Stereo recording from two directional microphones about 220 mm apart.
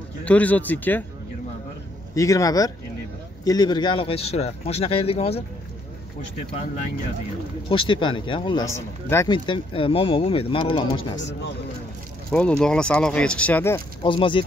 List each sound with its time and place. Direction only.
0.2 s speech: 5° left (ahead or behind)
2.1 s speech: 15° left (ahead or behind)
7.7 s speech: 20° left (ahead or behind)
11.1 s a man's voice: 55° left (ahead or behind)
12.3 s speech: 5° left (ahead or behind)
14.0 s speech: 25° left (ahead or behind)